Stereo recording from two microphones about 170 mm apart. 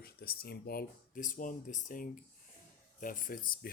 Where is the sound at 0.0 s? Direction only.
65° left (ahead or behind).